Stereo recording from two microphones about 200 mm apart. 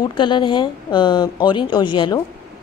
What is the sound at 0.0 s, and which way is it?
Speech, 25° left (ahead or behind).